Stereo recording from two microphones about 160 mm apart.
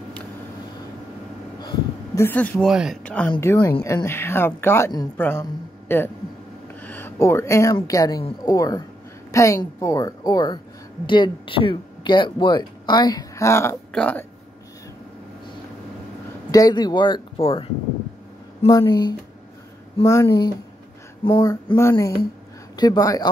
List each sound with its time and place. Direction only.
2.1 s speech: 10° left (ahead or behind)
2.7 s speech: 5° right (ahead or behind)
3.0 s speech: 10° left (ahead or behind)
16.5 s speech: 25° left (ahead or behind)
18.7 s speech: 25° left (ahead or behind)